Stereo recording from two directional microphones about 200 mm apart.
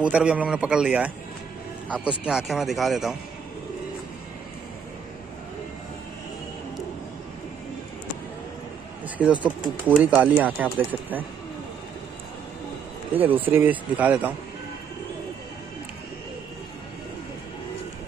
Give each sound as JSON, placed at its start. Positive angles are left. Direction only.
{"t": 0.0, "sound": "a man's voice", "side_deg": -5}
{"t": 9.4, "sound": "speech", "side_deg": -5}
{"t": 13.1, "sound": "speech", "side_deg": -10}